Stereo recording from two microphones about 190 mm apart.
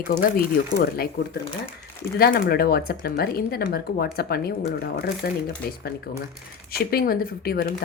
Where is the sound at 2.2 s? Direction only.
50° left (ahead or behind).